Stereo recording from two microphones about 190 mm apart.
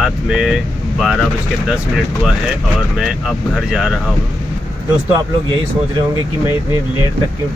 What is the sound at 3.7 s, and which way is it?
Speech, centre (ahead or behind).